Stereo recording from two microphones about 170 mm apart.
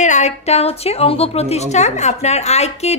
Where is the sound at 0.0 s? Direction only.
45° left (ahead or behind).